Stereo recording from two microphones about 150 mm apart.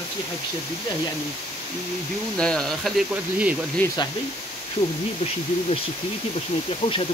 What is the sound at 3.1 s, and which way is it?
Speech, 10° right (ahead or behind).